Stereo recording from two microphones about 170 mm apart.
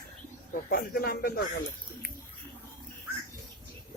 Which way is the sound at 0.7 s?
60° left (ahead or behind).